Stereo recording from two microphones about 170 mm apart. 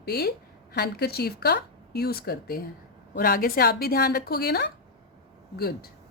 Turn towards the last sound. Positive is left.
turn(degrees=65)  # may be behind; listen again after turning